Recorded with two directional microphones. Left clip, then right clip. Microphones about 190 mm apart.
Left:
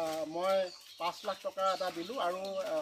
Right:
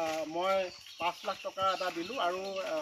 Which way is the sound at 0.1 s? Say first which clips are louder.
Right 1 dB; 10° left (ahead or behind).